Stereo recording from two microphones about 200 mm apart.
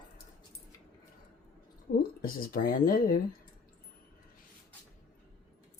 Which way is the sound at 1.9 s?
45° left (ahead or behind).